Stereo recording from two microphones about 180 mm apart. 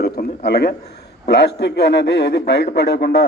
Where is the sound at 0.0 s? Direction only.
60° left (ahead or behind).